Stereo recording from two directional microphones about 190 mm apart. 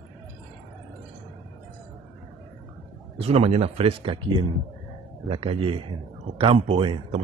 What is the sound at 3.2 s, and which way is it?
Speech, 35° right (ahead or behind).